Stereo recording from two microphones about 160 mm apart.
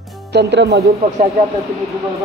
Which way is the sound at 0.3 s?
90° right.